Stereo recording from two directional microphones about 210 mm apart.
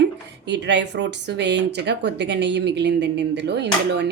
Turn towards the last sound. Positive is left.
turn(degrees=-55)  # may be behind; listen again after turning